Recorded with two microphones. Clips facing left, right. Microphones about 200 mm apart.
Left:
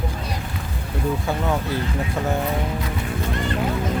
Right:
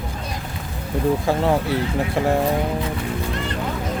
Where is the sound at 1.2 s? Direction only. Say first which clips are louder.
Right 4 dB; 30° right (ahead or behind).